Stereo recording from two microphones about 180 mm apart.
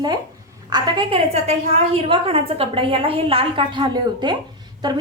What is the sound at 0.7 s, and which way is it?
A woman's voice, 30° right (ahead or behind).